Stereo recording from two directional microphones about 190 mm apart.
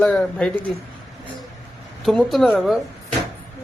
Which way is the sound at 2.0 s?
Centre (ahead or behind).